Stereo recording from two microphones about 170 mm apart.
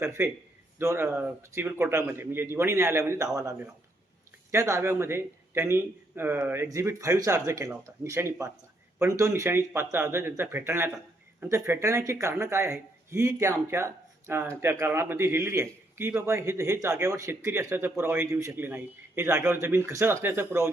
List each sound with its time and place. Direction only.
0.0 s speech: 15° right (ahead or behind)